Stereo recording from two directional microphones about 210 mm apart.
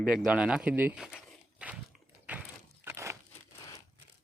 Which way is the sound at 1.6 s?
5° right (ahead or behind).